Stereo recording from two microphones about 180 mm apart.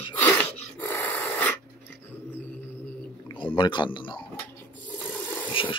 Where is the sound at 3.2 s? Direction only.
25° left (ahead or behind).